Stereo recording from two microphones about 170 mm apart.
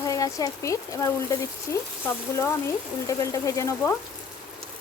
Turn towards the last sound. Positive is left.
turn(degrees=20)  # may be behind; listen again after turning